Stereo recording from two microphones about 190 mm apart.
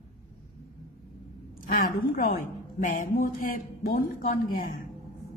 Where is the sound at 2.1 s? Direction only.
45° left (ahead or behind).